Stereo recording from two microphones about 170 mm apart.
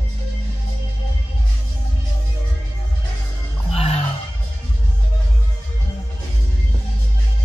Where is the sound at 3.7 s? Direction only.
35° left (ahead or behind).